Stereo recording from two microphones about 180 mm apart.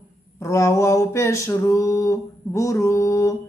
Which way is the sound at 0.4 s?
15° left (ahead or behind).